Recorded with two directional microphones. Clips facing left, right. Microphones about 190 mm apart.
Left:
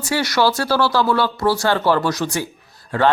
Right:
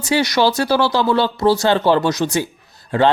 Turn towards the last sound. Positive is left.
turn(degrees=-20)  # may be behind; listen again after turning